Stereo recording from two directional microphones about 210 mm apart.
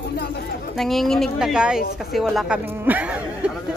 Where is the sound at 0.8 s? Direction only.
Centre (ahead or behind).